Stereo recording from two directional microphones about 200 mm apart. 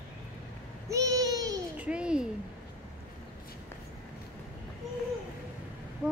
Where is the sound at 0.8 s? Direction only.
15° right (ahead or behind).